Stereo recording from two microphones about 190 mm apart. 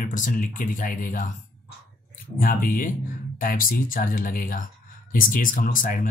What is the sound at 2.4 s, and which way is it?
Speech, 45° left (ahead or behind).